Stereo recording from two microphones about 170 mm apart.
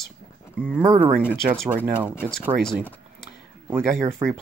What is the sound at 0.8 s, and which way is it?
Speech, 25° right (ahead or behind).